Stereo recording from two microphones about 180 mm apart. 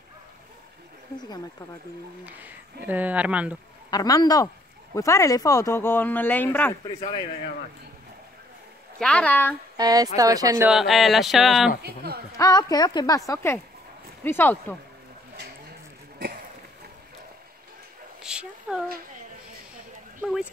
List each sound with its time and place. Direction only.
2.2 s speech: 10° right (ahead or behind)
3.9 s a woman's voice: 20° left (ahead or behind)
9.0 s speech: 5° left (ahead or behind)
9.8 s speech: 20° right (ahead or behind)
10.7 s speech: centre (ahead or behind)
11.8 s a woman's voice: 60° right (ahead or behind)
12.4 s a woman's voice: 20° left (ahead or behind)
18.2 s a sound: 5° right (ahead or behind)